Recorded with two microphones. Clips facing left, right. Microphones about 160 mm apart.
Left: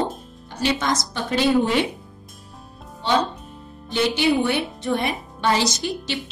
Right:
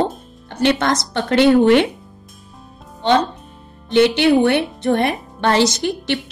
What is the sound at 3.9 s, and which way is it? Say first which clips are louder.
A woman's voice: right 7 dB; 65° right (ahead or behind).